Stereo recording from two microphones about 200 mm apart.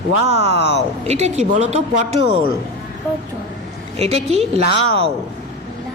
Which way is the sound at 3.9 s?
30° right (ahead or behind).